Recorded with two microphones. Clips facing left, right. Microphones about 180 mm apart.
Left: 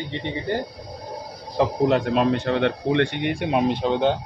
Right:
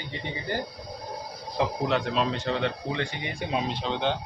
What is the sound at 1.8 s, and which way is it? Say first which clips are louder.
Speech: left 9 dB; 45° left (ahead or behind).